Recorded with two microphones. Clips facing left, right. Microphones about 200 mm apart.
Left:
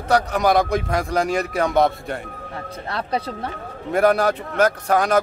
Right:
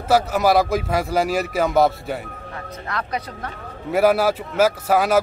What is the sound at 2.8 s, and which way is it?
Speech, 30° left (ahead or behind).